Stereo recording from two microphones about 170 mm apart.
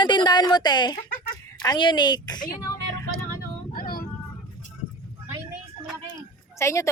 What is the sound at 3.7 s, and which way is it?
Child singing, 60° left (ahead or behind).